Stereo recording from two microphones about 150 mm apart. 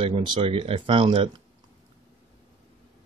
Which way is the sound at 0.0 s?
35° right (ahead or behind).